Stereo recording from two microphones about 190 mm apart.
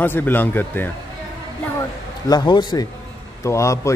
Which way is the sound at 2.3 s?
25° left (ahead or behind).